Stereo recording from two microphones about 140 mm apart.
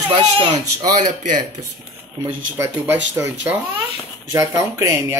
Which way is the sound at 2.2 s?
20° right (ahead or behind).